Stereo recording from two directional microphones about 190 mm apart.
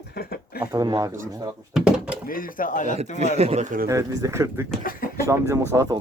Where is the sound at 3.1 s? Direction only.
35° right (ahead or behind).